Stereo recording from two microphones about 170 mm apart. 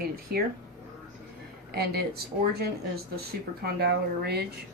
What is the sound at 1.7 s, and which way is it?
Speech, 70° right (ahead or behind).